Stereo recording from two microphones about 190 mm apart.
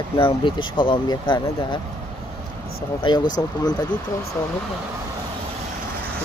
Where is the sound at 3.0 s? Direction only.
25° left (ahead or behind).